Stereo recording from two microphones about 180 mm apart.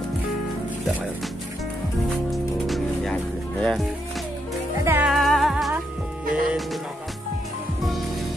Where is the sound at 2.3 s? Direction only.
Centre (ahead or behind).